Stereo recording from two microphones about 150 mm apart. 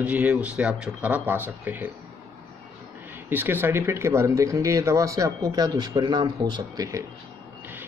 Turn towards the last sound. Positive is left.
turn(degrees=-25)  # may be behind; listen again after turning